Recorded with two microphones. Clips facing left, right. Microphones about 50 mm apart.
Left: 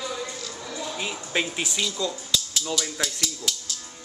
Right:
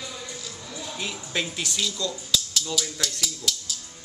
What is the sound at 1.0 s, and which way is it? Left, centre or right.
Speech, centre.